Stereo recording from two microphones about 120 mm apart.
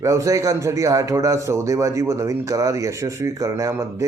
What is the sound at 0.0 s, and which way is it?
A man's voice, 25° right (ahead or behind).